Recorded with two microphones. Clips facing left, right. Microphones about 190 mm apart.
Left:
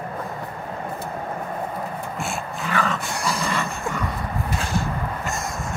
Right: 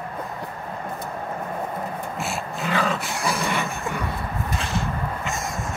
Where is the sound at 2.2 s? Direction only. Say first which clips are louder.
Even; centre (ahead or behind).